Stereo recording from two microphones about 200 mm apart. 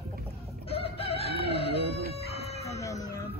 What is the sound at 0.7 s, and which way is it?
Chicken, 30° left (ahead or behind).